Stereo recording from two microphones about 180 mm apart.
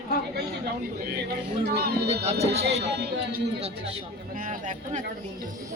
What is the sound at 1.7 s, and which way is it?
Speech, 65° right (ahead or behind).